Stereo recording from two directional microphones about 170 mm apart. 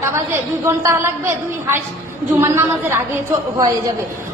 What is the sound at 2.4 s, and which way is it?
Speech, 15° right (ahead or behind).